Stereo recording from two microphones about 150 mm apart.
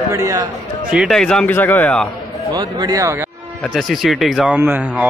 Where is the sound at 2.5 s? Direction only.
25° right (ahead or behind).